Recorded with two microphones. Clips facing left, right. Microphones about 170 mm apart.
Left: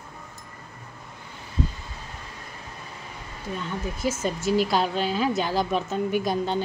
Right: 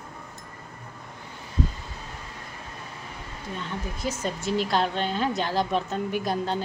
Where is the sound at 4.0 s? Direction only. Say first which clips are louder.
Left 3 dB; 5° left (ahead or behind).